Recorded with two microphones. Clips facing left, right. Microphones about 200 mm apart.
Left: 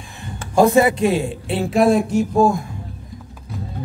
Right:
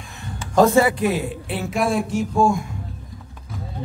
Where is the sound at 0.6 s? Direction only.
15° left (ahead or behind); by 2.6 s 35° left (ahead or behind).